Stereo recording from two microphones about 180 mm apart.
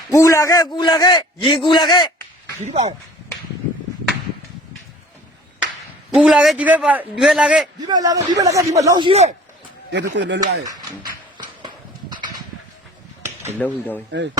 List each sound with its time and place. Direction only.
0.1 s a man's voice: 15° left (ahead or behind)
2.6 s speech: 35° right (ahead or behind)
6.1 s a man's voice: 5° right (ahead or behind)
7.8 s a man's voice: 20° right (ahead or behind)
9.0 s speech: 35° right (ahead or behind)
9.9 s speech: 75° right (ahead or behind)
13.6 s speech: 10° left (ahead or behind)